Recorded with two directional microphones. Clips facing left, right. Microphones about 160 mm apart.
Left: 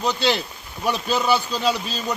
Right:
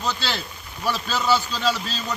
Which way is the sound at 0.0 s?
15° left (ahead or behind).